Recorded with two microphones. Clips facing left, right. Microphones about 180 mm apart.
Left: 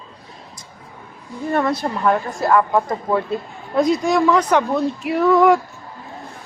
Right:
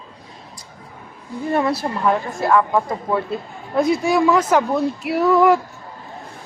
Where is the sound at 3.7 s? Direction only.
10° right (ahead or behind).